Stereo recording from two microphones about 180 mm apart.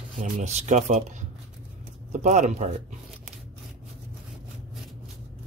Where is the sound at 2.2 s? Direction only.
40° right (ahead or behind).